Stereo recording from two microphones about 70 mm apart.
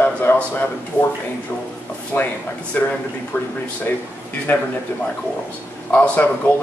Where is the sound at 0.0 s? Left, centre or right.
Left.